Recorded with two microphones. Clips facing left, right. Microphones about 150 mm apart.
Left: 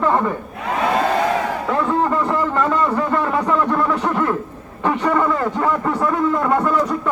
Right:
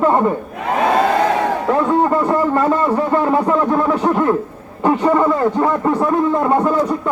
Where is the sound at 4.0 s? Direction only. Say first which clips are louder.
Right 4 dB; 35° right (ahead or behind).